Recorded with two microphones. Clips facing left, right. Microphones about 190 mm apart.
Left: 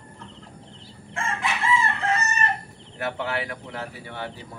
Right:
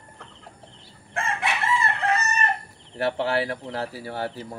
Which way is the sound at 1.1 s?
65° right (ahead or behind).